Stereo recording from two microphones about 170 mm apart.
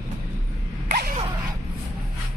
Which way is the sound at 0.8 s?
60° right (ahead or behind).